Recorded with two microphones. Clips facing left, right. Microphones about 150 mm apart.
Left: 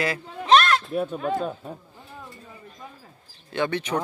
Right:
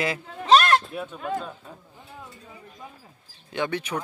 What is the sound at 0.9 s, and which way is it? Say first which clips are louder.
Speech: left 5 dB; 40° left (ahead or behind).